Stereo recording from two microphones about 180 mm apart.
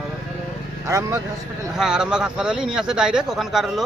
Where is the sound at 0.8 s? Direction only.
20° right (ahead or behind).